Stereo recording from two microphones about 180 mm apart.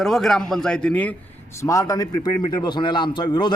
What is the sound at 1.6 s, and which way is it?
A man's voice, 20° left (ahead or behind).